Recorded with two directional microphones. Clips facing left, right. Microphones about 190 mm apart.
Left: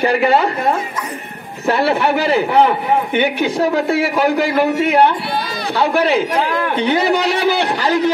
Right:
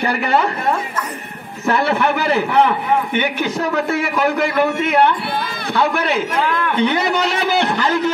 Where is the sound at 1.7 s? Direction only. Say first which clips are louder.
Left 2 dB; 35° left (ahead or behind).